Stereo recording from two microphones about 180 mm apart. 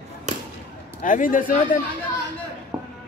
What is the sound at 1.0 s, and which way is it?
Speech, 45° left (ahead or behind).